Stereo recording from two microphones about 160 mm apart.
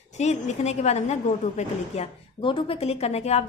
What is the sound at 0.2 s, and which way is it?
A woman's voice, 45° left (ahead or behind).